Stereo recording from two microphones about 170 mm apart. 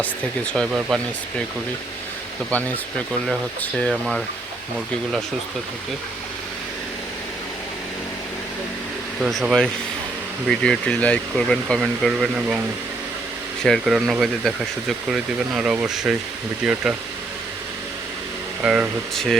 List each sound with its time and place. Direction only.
0.0 s speech: 5° left (ahead or behind)
2.5 s speech: 10° left (ahead or behind)
9.2 s speech: 5° right (ahead or behind)
13.7 s speech: centre (ahead or behind)
18.6 s speech: 5° right (ahead or behind)